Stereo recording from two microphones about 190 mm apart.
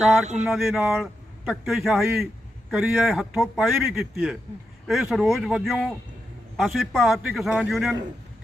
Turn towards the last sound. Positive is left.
turn(degrees=0)  # may be behind; listen again after turning